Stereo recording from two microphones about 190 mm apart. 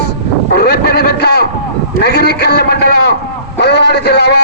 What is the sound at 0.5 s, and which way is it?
A man's voice, 60° left (ahead or behind).